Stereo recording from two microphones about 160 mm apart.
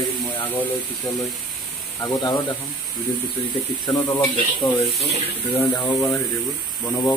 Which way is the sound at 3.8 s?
30° left (ahead or behind).